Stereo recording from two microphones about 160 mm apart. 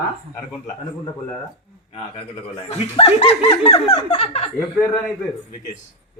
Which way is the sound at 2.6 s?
40° left (ahead or behind).